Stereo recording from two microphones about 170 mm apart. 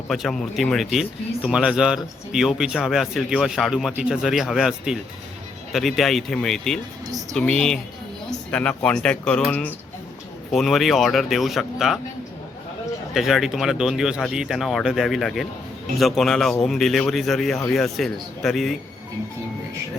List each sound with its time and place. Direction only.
0.1 s speech: centre (ahead or behind)
13.1 s speech: centre (ahead or behind)